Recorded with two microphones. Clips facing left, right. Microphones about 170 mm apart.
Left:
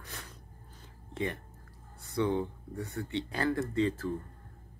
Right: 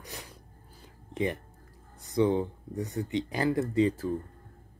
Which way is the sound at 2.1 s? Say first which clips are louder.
Right 5 dB; 20° right (ahead or behind).